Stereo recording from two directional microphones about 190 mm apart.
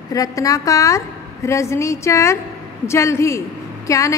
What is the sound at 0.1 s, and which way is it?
A woman's voice, 20° left (ahead or behind).